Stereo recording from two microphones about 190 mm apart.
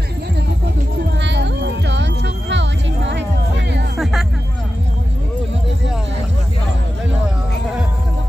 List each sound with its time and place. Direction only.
1.2 s music: 65° right (ahead or behind)
4.0 s music: centre (ahead or behind)